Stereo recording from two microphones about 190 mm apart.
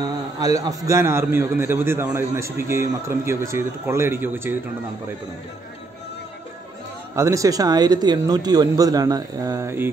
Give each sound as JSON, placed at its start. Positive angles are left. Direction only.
{"t": 0.0, "sound": "a man's voice", "side_deg": -20}
{"t": 7.2, "sound": "speech", "side_deg": -15}